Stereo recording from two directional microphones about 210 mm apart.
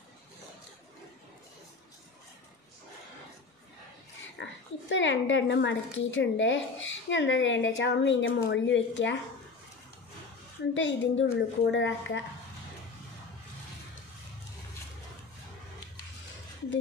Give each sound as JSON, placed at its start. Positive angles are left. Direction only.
{"t": 4.4, "sound": "speech", "side_deg": 60}
{"t": 10.7, "sound": "speech", "side_deg": 60}